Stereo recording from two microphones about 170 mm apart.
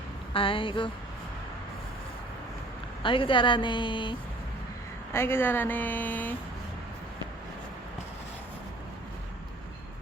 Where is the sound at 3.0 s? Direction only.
30° left (ahead or behind).